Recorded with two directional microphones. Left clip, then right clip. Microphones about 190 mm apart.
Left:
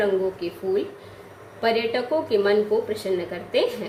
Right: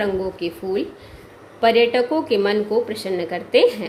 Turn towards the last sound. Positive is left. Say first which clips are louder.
# right 7 dB
turn(degrees=-45)  # may be behind; listen again after turning